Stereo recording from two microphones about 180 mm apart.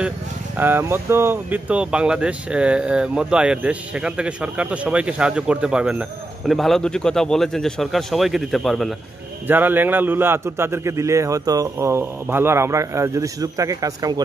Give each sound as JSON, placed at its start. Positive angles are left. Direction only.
{"t": 0.6, "sound": "speech", "side_deg": -10}
{"t": 9.5, "sound": "a man's voice", "side_deg": -10}